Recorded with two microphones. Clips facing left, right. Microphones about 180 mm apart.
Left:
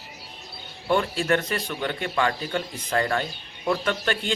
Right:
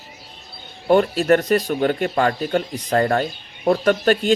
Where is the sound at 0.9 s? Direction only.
40° right (ahead or behind).